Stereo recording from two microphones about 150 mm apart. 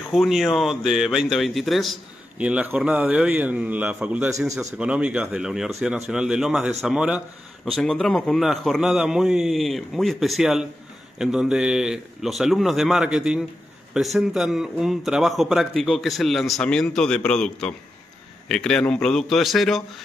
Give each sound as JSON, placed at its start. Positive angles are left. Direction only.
{"t": 0.1, "sound": "speech", "side_deg": 0}